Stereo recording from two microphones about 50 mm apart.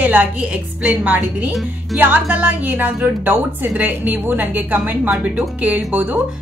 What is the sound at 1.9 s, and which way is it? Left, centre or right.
Speech, right.